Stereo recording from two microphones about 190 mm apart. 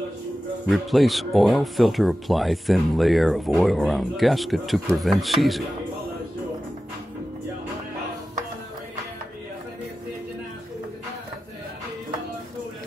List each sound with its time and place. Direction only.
0.7 s speech: centre (ahead or behind)